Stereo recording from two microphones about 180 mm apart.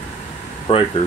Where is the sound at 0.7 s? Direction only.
30° left (ahead or behind).